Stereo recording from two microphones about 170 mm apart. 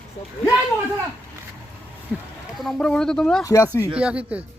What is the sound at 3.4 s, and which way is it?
Speech, 20° left (ahead or behind).